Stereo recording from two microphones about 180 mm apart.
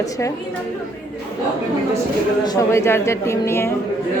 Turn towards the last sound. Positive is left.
turn(degrees=15)  # may be behind; listen again after turning